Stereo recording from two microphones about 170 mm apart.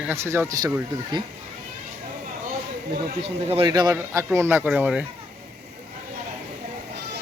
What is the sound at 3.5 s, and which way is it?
Speech, 30° right (ahead or behind).